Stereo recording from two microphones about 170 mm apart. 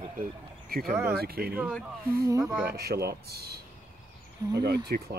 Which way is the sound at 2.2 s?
20° right (ahead or behind).